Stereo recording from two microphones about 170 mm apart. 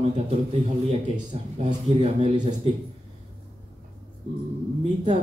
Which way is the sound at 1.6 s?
40° right (ahead or behind).